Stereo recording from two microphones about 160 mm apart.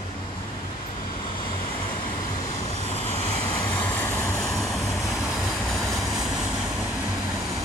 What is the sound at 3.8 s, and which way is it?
Vehicle, 15° left (ahead or behind).